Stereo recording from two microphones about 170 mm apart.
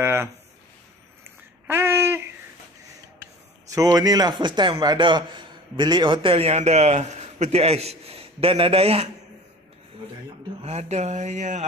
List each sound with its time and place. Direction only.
0.0 s a sound: 15° right (ahead or behind)
1.2 s babbling: 15° right (ahead or behind)
3.7 s a man's voice: 20° right (ahead or behind); by 9.1 s 35° right (ahead or behind)
10.6 s speech: 40° right (ahead or behind)